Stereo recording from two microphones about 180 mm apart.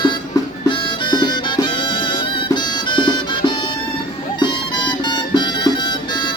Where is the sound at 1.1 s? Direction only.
25° left (ahead or behind).